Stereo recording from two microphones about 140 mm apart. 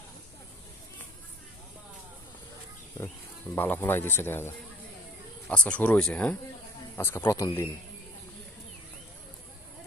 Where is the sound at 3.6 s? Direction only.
15° left (ahead or behind).